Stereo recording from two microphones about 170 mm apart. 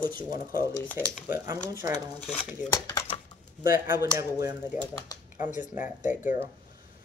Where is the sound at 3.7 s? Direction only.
15° right (ahead or behind).